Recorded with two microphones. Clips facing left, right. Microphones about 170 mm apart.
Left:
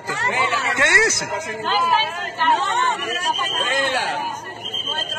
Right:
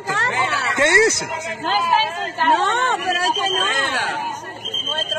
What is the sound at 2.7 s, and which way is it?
Speech, 90° right.